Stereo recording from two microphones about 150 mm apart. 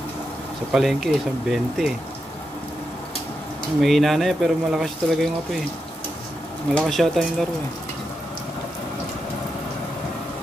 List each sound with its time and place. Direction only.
0.7 s speech: centre (ahead or behind)
3.8 s speech: centre (ahead or behind)
6.7 s speech: centre (ahead or behind)